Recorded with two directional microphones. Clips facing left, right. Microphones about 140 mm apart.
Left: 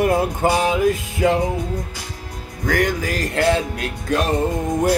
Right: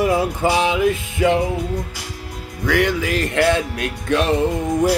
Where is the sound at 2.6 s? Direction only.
45° left (ahead or behind).